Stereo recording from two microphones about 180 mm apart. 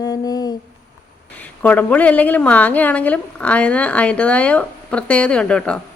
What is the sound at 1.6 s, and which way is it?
A woman's voice, 10° left (ahead or behind).